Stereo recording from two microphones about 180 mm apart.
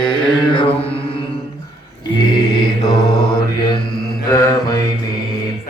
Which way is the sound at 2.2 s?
25° left (ahead or behind).